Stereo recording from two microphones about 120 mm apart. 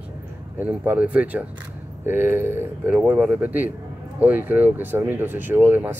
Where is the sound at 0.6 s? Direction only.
15° right (ahead or behind).